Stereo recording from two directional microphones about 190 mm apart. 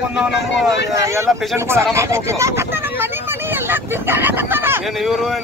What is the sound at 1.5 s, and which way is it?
Speech, 15° right (ahead or behind).